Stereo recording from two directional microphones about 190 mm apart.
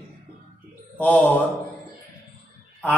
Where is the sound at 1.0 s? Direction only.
10° left (ahead or behind).